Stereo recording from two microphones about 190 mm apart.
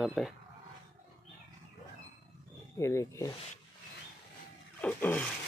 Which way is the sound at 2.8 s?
15° left (ahead or behind).